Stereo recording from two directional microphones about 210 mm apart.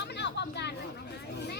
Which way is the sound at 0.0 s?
55° left (ahead or behind).